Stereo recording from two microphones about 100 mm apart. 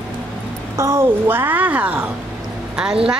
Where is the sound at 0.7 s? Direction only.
30° right (ahead or behind).